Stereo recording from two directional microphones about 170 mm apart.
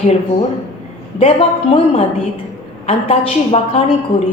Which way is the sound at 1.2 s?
35° left (ahead or behind).